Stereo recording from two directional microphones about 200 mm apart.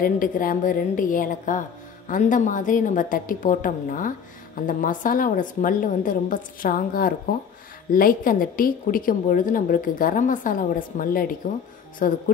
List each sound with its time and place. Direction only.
0.0 s a woman's voice: 45° left (ahead or behind)